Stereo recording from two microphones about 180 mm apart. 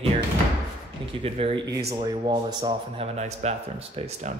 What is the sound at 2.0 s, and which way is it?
Speech, 25° right (ahead or behind).